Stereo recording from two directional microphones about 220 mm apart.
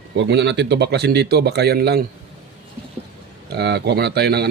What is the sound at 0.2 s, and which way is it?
Speech, 50° right (ahead or behind).